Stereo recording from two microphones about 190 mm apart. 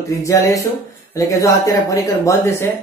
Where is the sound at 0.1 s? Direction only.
15° left (ahead or behind).